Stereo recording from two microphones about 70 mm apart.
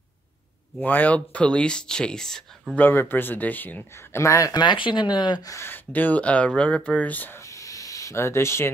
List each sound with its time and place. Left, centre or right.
0.7 s speech: left; by 2.4 s centre
2.7 s speech: left
3.9 s speech: left
4.6 s speech: left
5.7 s speech: left
7.3 s a sound: left